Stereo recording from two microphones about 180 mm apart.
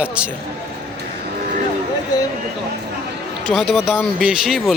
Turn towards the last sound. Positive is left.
turn(degrees=0)  # may be behind; listen again after turning